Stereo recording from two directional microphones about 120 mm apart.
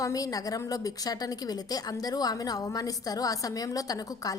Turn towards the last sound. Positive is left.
turn(degrees=30)  # may be behind; listen again after turning